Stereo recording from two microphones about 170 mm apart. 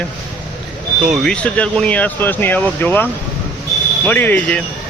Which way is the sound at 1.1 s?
5° left (ahead or behind).